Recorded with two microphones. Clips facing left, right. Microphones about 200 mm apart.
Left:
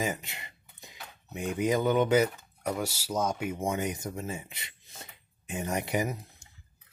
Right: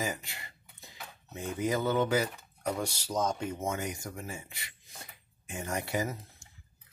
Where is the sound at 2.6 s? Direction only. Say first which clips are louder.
Left 1 dB; 5° left (ahead or behind).